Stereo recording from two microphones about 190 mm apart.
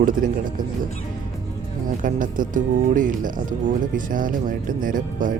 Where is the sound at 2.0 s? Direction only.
45° right (ahead or behind).